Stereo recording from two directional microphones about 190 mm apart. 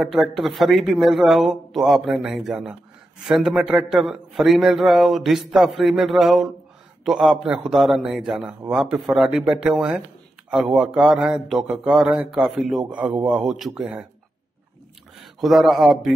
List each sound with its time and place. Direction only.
0.0 s speech: centre (ahead or behind)
15.1 s speech: centre (ahead or behind)